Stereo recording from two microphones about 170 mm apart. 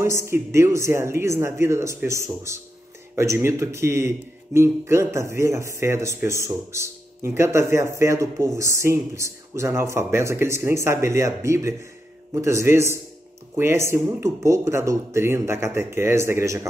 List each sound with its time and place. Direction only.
0.0 s speech: 15° right (ahead or behind)